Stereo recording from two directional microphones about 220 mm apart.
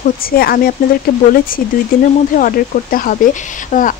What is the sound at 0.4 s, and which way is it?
Speech, 45° left (ahead or behind).